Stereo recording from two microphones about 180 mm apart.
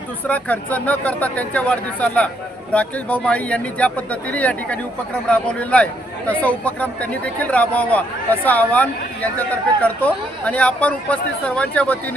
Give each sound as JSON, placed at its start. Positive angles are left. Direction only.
{"t": 0.3, "sound": "speech", "side_deg": 10}